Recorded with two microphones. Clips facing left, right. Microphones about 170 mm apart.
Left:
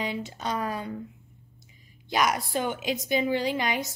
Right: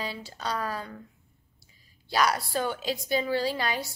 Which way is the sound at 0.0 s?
20° left (ahead or behind).